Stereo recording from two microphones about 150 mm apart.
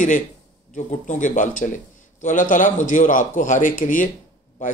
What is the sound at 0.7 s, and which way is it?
A man's voice, 55° left (ahead or behind).